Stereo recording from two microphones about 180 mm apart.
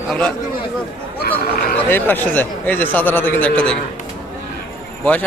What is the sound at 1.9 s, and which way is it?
A man's voice, 10° left (ahead or behind).